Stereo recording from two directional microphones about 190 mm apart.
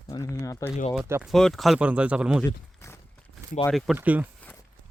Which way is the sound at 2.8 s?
15° left (ahead or behind).